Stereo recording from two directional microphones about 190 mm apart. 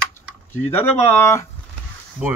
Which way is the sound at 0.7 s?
10° left (ahead or behind).